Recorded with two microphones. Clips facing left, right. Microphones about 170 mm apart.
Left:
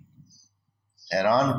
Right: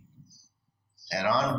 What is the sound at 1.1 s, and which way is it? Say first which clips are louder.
Speech: left 5 dB; 50° left (ahead or behind).